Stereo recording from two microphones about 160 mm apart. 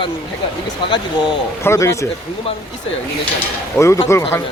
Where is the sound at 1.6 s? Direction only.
20° left (ahead or behind).